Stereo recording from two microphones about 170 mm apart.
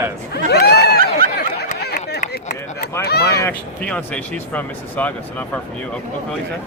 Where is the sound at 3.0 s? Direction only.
70° left (ahead or behind).